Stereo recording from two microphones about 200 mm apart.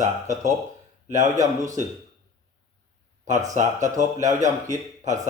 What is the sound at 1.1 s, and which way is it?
Speech, 35° right (ahead or behind).